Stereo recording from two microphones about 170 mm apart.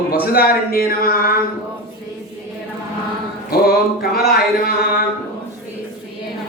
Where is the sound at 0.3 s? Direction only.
65° left (ahead or behind).